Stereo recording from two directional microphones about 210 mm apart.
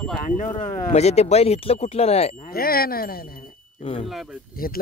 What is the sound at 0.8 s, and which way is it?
Speech, 30° left (ahead or behind).